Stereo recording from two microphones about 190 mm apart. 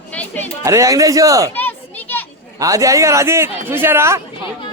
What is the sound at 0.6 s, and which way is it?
Speech, 15° right (ahead or behind).